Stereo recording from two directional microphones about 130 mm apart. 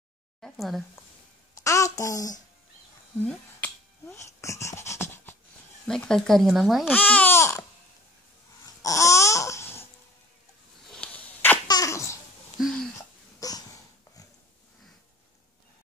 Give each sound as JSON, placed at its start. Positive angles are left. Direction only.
{"t": 0.4, "sound": "speech", "side_deg": 0}
{"t": 1.6, "sound": "a child's voice", "side_deg": 25}
{"t": 3.6, "sound": "a sound", "side_deg": 20}
{"t": 5.9, "sound": "speech", "side_deg": 5}
{"t": 6.9, "sound": "speech", "side_deg": 10}
{"t": 8.8, "sound": "babbling", "side_deg": 25}
{"t": 10.9, "sound": "a sound", "side_deg": 10}
{"t": 11.6, "sound": "babbling", "side_deg": 30}
{"t": 12.5, "sound": "a sound", "side_deg": 0}
{"t": 13.4, "sound": "dog", "side_deg": 30}